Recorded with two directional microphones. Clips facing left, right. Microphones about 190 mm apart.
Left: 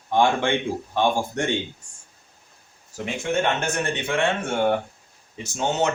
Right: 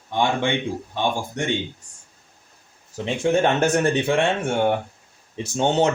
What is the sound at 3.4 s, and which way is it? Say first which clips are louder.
Speech: right 6 dB; 40° right (ahead or behind).